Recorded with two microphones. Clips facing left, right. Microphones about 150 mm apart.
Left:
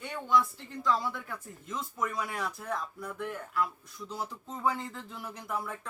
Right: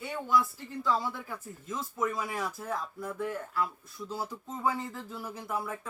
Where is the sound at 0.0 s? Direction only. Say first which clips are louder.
Even; 5° right (ahead or behind).